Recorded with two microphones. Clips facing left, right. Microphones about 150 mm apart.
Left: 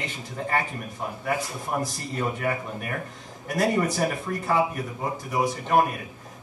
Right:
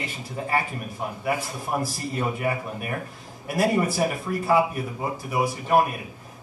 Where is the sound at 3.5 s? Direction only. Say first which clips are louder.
Right 1 dB; 10° right (ahead or behind).